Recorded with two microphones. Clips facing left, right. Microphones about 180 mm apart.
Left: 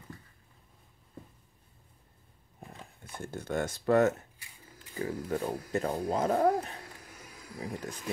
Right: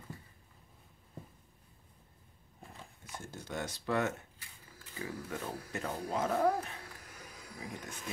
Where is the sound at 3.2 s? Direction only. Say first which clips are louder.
Left 8 dB; 55° left (ahead or behind); by 6.8 s 35° left (ahead or behind).